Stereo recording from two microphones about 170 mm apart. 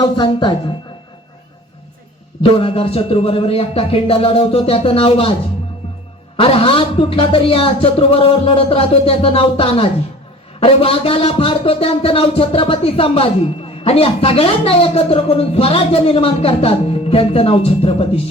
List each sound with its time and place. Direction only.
0.0 s a woman's voice: 25° left (ahead or behind)
2.4 s a man's voice: 35° left (ahead or behind)
6.3 s a man's voice: 30° left (ahead or behind)